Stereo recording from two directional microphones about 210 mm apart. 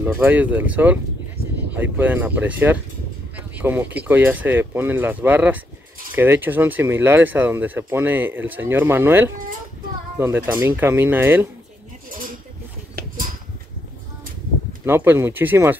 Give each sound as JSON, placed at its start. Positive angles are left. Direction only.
{"t": 0.0, "sound": "speech", "side_deg": -10}
{"t": 12.1, "sound": "a sound", "side_deg": -40}
{"t": 14.9, "sound": "speech", "side_deg": -10}